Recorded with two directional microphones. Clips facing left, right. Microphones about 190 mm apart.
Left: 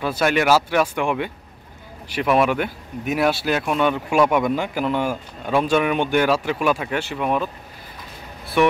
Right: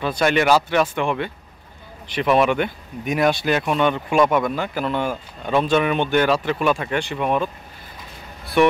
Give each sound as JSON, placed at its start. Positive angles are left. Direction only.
{"t": 0.0, "sound": "speech", "side_deg": 5}
{"t": 8.6, "sound": "speech", "side_deg": 0}